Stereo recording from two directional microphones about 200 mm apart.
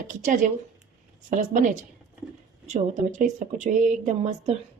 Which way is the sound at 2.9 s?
35° right (ahead or behind).